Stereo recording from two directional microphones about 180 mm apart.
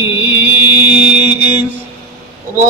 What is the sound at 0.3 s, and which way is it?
Music, 10° right (ahead or behind).